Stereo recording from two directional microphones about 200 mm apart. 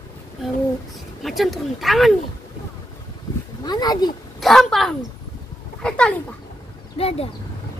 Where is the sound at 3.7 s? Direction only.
20° left (ahead or behind).